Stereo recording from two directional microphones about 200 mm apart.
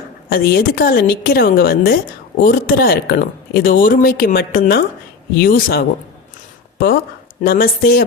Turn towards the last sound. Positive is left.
turn(degrees=50)  # may be behind; listen again after turning